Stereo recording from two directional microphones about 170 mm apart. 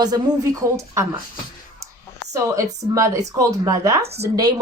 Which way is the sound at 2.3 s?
20° right (ahead or behind).